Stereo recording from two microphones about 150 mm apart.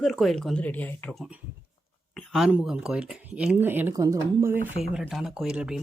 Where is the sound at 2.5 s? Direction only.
5° right (ahead or behind); by 4.5 s 20° right (ahead or behind).